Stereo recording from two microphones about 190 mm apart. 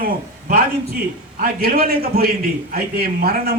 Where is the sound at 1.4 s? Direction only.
50° right (ahead or behind).